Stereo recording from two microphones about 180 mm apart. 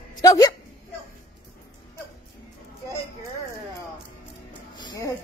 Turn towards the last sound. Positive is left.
turn(degrees=25)  # may be behind; listen again after turning